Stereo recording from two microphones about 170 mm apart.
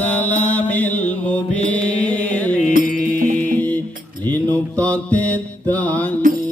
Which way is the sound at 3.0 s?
55° right (ahead or behind).